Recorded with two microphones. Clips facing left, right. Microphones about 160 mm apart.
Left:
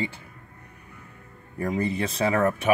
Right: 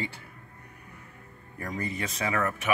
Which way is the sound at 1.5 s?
30° left (ahead or behind).